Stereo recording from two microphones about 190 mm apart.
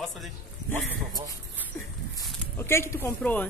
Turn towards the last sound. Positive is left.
turn(degrees=5)  # may be behind; listen again after turning